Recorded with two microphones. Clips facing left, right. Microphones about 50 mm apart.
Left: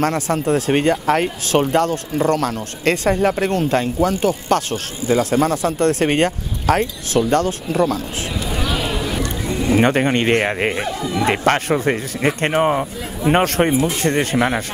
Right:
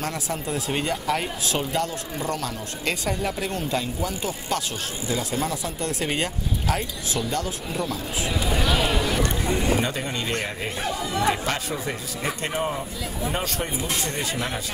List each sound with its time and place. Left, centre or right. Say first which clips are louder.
0.0 s speech: left 10 dB; left
8.4 s a sound: left 1 dB; centre
9.8 s speech: left 11 dB; left